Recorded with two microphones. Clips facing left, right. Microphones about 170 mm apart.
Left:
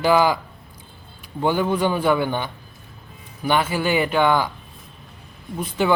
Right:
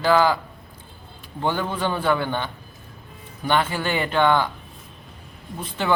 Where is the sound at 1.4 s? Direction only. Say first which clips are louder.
Left 4 dB; 10° left (ahead or behind).